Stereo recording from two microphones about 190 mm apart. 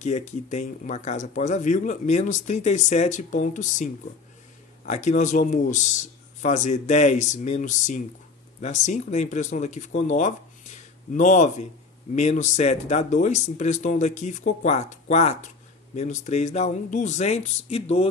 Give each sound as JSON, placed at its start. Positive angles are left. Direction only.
{"t": 0.0, "sound": "speech", "side_deg": 40}